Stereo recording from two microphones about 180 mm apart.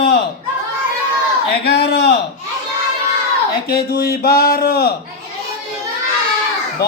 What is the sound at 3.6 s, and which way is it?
Speech, 55° left (ahead or behind).